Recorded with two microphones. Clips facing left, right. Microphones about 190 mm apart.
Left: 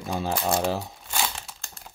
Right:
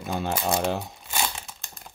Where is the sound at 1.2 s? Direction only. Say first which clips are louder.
Even; centre (ahead or behind).